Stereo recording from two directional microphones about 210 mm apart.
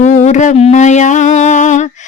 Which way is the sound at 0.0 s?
35° left (ahead or behind).